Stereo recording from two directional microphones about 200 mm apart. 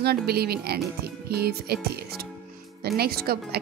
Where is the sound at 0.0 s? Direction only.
50° right (ahead or behind).